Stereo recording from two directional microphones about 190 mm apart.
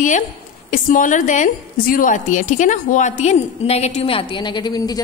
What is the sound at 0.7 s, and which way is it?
A woman's voice, 45° left (ahead or behind).